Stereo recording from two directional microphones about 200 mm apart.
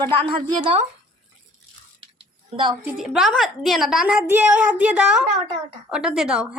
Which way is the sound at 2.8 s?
Centre (ahead or behind).